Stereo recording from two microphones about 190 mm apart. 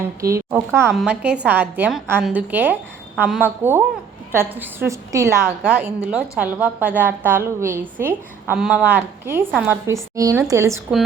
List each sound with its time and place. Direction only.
0.2 s a woman's voice: 15° right (ahead or behind)